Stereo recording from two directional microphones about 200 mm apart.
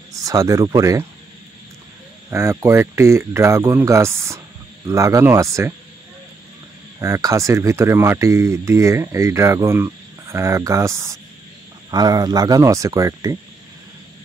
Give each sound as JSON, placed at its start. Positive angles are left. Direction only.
{"t": 0.1, "sound": "speech", "side_deg": -15}
{"t": 2.3, "sound": "speech", "side_deg": -15}
{"t": 7.0, "sound": "speech", "side_deg": -15}